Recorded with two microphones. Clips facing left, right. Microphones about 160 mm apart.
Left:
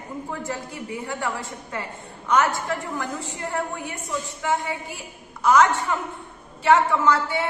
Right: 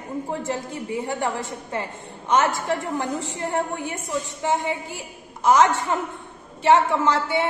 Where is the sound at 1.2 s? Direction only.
20° right (ahead or behind).